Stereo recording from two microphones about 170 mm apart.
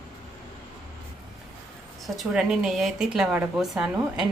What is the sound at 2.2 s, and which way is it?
Speech, centre (ahead or behind).